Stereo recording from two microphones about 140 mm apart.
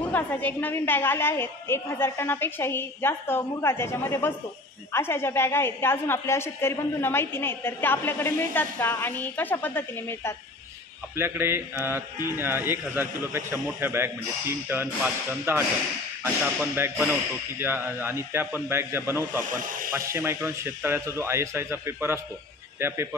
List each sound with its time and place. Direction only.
0.1 s a woman's voice: 10° left (ahead or behind)
11.1 s a man's voice: 20° right (ahead or behind)
16.7 s a man's voice: 15° right (ahead or behind)
19.5 s speech: 75° right (ahead or behind)
20.1 s a man's voice: 15° right (ahead or behind)